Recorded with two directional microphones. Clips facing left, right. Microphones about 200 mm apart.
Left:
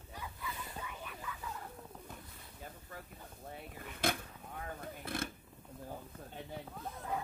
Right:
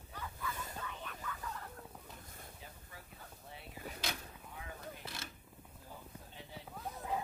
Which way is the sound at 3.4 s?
50° left (ahead or behind).